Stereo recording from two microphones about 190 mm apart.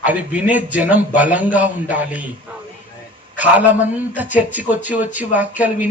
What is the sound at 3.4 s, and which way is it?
A man's voice, 10° right (ahead or behind).